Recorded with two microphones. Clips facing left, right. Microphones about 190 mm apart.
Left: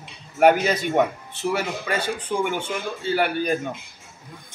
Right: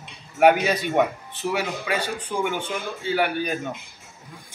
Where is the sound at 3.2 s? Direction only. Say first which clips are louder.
Left 2 dB; 5° right (ahead or behind).